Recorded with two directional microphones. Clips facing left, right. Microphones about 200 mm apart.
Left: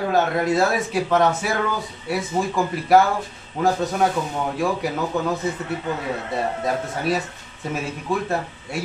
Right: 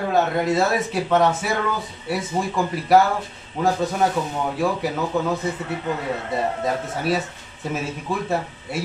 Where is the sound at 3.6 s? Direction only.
Centre (ahead or behind).